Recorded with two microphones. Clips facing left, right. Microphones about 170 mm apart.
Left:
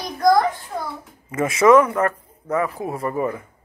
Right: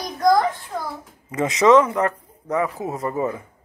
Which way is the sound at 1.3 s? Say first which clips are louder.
Left 1 dB; 20° right (ahead or behind).